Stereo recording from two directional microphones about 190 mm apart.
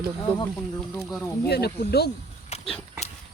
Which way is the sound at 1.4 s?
60° left (ahead or behind).